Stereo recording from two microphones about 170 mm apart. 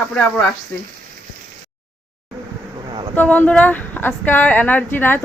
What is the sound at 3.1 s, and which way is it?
A woman's voice, 10° left (ahead or behind).